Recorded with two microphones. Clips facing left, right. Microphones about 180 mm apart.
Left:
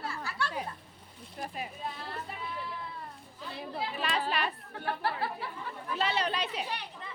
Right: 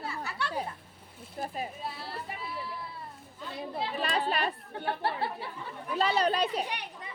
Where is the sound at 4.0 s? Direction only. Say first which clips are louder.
Right 2 dB; 35° right (ahead or behind).